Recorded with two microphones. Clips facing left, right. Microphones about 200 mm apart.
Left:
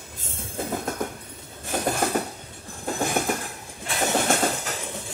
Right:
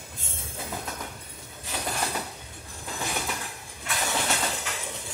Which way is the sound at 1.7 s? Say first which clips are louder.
Left 8 dB; 50° left (ahead or behind).